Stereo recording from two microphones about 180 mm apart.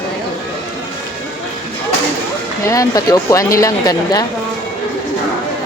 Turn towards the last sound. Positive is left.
turn(degrees=20)  # may be behind; listen again after turning